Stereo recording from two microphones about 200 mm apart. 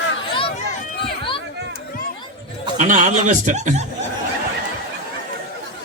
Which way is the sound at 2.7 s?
40° right (ahead or behind).